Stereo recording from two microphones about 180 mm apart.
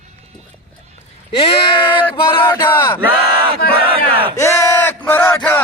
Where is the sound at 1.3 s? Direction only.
30° left (ahead or behind).